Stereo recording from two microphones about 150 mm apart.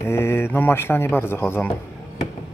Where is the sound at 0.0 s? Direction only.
15° left (ahead or behind).